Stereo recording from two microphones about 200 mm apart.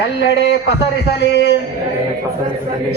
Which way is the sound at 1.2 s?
60° left (ahead or behind).